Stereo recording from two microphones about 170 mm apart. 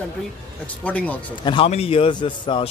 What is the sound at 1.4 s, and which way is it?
A man's voice, 35° left (ahead or behind).